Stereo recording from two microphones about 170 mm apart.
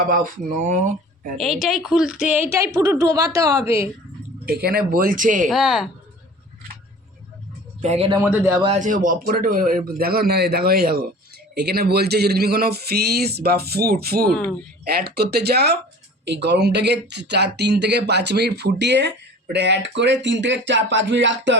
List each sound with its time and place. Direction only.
0.1 s speech: 50° right (ahead or behind)
1.6 s a woman's voice: centre (ahead or behind); by 3.8 s 20° right (ahead or behind)
4.4 s a man's voice: 65° right (ahead or behind); by 5.5 s 50° right (ahead or behind)
5.5 s speech: centre (ahead or behind)
7.8 s a man's voice: 40° right (ahead or behind)
8.2 s a woman's voice: 10° right (ahead or behind)
8.8 s a man's voice: 50° right (ahead or behind); by 15.8 s 75° right (ahead or behind)
16.2 s speech: 85° right